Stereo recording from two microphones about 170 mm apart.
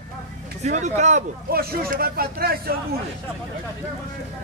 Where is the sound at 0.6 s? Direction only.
45° right (ahead or behind).